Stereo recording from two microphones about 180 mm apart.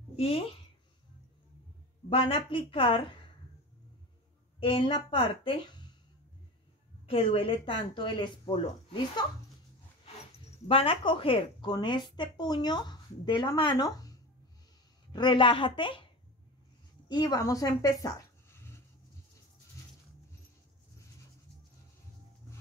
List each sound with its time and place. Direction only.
0.1 s a sound: 35° left (ahead or behind)
2.0 s a woman's voice: 30° left (ahead or behind)
4.6 s a woman's voice: 30° left (ahead or behind)
7.1 s a woman's voice: 30° left (ahead or behind)
10.7 s a woman's voice: 30° left (ahead or behind)
15.1 s a woman's voice: 25° left (ahead or behind)
17.1 s speech: 20° left (ahead or behind)